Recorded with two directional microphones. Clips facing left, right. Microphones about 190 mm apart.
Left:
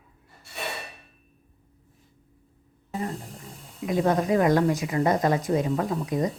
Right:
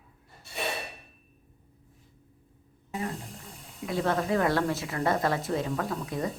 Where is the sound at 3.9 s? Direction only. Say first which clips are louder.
Left 5 dB; 15° left (ahead or behind).